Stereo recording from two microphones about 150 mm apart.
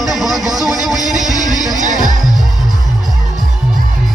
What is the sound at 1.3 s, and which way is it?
Music, 25° left (ahead or behind).